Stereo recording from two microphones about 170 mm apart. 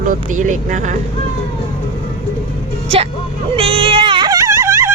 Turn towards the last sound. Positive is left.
turn(degrees=-15)  # may be behind; listen again after turning